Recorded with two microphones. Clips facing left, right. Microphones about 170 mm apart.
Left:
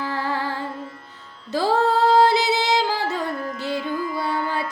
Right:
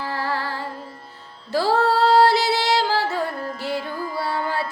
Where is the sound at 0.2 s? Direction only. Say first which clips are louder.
Right 1 dB; 20° left (ahead or behind).